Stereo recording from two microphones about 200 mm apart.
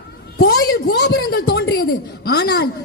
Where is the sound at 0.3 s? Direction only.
50° left (ahead or behind).